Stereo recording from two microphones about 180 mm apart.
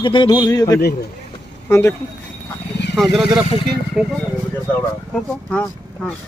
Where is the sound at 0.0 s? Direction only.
25° left (ahead or behind).